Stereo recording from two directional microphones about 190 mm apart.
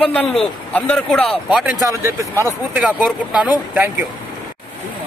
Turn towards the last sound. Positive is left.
turn(degrees=-10)  # may be behind; listen again after turning